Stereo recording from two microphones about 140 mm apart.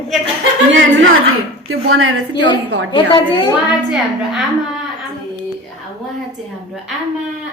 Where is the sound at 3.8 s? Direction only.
Centre (ahead or behind).